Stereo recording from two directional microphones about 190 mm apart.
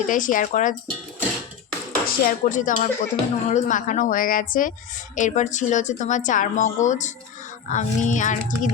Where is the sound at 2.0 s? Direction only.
40° left (ahead or behind).